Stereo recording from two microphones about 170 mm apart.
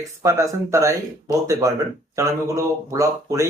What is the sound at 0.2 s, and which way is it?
Speech, 20° right (ahead or behind).